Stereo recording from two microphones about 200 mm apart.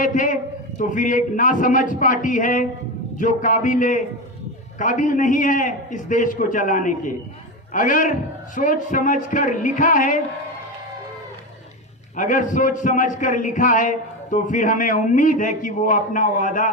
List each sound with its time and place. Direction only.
0.0 s a man's voice: 40° left (ahead or behind)
12.1 s a man's voice: 40° left (ahead or behind)